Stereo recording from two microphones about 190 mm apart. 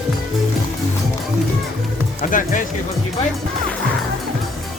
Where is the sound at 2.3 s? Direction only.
45° left (ahead or behind).